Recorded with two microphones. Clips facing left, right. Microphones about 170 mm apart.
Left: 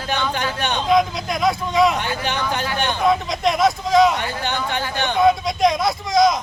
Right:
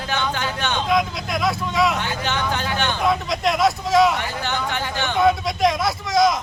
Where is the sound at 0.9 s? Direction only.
Centre (ahead or behind).